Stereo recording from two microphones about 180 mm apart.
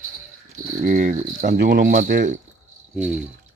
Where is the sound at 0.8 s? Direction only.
45° right (ahead or behind).